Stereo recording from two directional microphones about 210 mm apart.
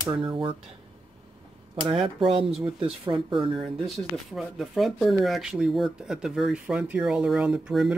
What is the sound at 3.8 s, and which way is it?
Speech, centre (ahead or behind).